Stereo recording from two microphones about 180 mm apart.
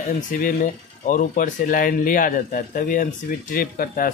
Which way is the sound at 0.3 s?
45° left (ahead or behind).